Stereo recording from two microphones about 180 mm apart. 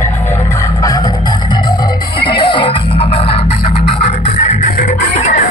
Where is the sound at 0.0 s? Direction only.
15° left (ahead or behind).